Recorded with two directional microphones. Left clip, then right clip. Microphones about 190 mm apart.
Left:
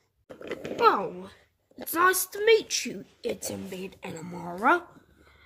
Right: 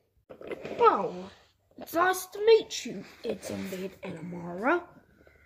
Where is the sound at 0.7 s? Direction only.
70° left (ahead or behind).